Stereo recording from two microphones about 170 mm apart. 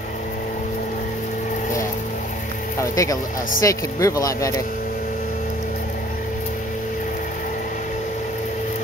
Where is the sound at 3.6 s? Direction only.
20° left (ahead or behind).